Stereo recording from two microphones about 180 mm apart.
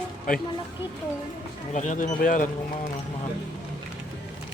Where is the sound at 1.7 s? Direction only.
45° left (ahead or behind).